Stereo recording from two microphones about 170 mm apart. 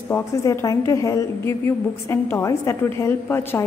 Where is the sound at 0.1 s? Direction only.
15° left (ahead or behind).